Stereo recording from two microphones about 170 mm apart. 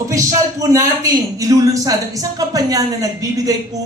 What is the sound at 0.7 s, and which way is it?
A woman's voice, 20° right (ahead or behind).